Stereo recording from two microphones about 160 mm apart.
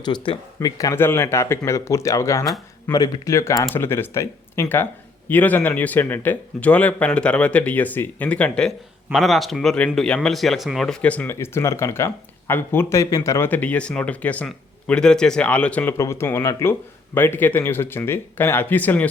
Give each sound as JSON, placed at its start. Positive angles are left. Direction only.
{"t": 0.0, "sound": "speech", "side_deg": 25}